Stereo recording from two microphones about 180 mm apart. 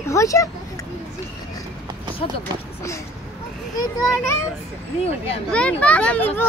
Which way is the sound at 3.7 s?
15° left (ahead or behind).